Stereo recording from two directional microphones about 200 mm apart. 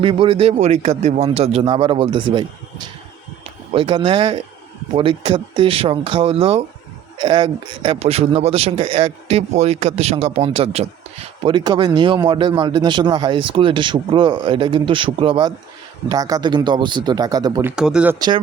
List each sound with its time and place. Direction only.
0.0 s speech: 25° right (ahead or behind); by 18.2 s 5° right (ahead or behind)